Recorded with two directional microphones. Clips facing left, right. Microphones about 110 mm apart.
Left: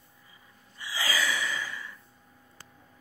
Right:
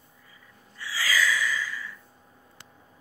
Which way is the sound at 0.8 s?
20° left (ahead or behind).